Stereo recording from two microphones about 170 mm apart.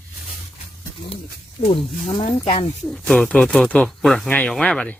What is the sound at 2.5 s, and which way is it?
Speech, 30° left (ahead or behind).